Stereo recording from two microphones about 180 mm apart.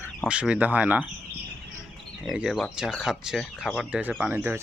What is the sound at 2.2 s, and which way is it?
Speech, 5° right (ahead or behind).